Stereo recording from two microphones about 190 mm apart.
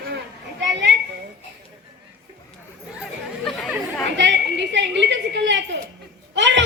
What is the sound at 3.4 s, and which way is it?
Chatter, centre (ahead or behind).